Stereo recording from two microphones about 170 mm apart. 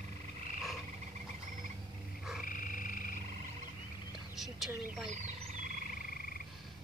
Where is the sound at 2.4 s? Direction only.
55° left (ahead or behind).